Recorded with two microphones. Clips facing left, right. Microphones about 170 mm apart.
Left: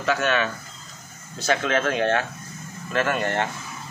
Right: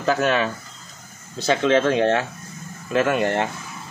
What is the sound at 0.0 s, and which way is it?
Speech, 35° right (ahead or behind).